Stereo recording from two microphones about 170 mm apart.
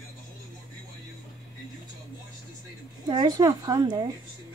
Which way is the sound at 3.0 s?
25° right (ahead or behind).